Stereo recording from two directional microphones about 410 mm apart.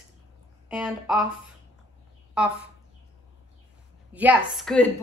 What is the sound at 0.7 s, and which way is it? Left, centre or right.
Speech, centre.